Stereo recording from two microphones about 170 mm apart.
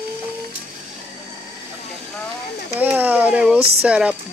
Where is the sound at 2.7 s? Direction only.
10° right (ahead or behind).